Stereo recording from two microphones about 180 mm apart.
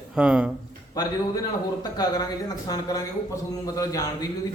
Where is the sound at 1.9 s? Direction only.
20° left (ahead or behind).